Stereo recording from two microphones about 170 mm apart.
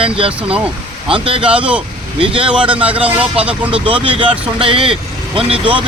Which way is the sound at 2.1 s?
30° right (ahead or behind).